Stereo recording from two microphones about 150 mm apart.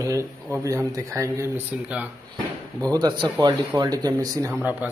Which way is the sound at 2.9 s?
30° right (ahead or behind).